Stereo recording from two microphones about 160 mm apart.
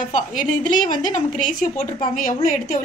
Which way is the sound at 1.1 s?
50° left (ahead or behind).